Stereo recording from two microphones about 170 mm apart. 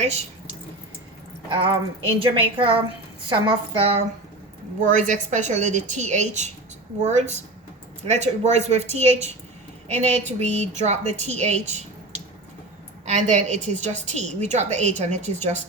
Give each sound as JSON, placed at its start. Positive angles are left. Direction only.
{"t": 1.5, "sound": "speech", "side_deg": -30}
{"t": 3.8, "sound": "speech", "side_deg": -35}
{"t": 4.8, "sound": "a woman's voice", "side_deg": -45}
{"t": 13.1, "sound": "a woman's voice", "side_deg": -45}